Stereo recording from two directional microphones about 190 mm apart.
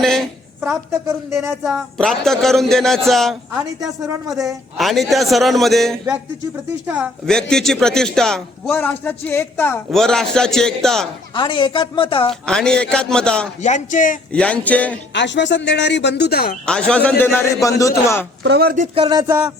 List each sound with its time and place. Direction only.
0.0 s a sound: centre (ahead or behind)
0.9 s speech: 15° right (ahead or behind)
1.6 s a man's voice: centre (ahead or behind)
4.0 s speech: 15° right (ahead or behind)
4.4 s a man's voice: centre (ahead or behind)
7.3 s a man's voice: 5° left (ahead or behind)
11.3 s speech: 25° left (ahead or behind)
12.3 s a man's voice: 5° left (ahead or behind)
13.6 s speech: 40° left (ahead or behind)
14.3 s a man's voice: 5° left (ahead or behind)
15.1 s speech: 70° left (ahead or behind)
16.6 s a man's voice: 5° left (ahead or behind)
18.4 s speech: 55° right (ahead or behind)
18.9 s a sound: 25° right (ahead or behind)